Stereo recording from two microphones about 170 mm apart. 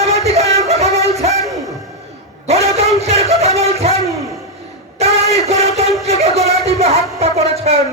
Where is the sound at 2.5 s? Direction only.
35° right (ahead or behind).